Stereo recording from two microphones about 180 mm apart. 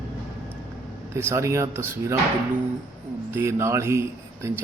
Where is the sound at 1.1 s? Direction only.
15° right (ahead or behind).